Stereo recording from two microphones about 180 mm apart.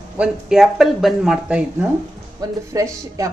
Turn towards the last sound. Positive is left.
turn(degrees=-20)  # may be behind; listen again after turning